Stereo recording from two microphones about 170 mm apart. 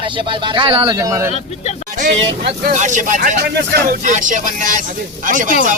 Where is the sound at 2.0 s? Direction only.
50° right (ahead or behind).